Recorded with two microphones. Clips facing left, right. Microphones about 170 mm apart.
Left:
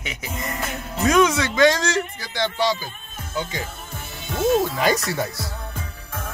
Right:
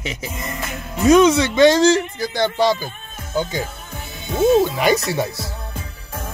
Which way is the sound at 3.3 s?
40° right (ahead or behind).